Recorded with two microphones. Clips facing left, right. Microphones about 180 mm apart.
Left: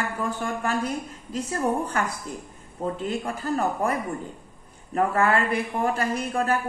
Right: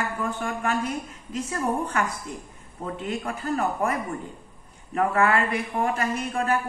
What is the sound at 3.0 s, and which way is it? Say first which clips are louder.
Speech: left 1 dB; 35° left (ahead or behind).